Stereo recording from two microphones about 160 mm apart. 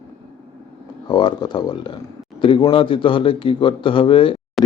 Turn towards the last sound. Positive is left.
turn(degrees=0)  # may be behind; listen again after turning